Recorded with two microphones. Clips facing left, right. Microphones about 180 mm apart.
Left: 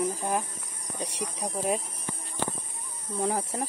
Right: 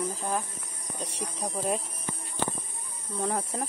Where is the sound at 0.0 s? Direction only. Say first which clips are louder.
Left 3 dB; 15° left (ahead or behind).